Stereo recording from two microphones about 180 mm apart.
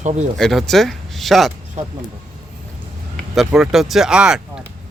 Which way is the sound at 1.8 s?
40° right (ahead or behind).